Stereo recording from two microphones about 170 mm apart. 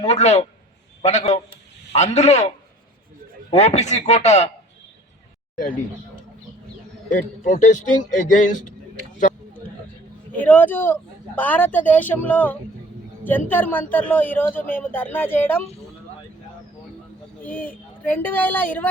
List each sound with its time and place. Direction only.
0.0 s a man's voice: 40° left (ahead or behind)
3.5 s speech: 40° left (ahead or behind)
5.5 s a man's voice: 55° left (ahead or behind)
7.1 s a man's voice: 45° left (ahead or behind)
10.3 s a man's voice: 10° left (ahead or behind)
17.4 s a man's voice: 10° left (ahead or behind)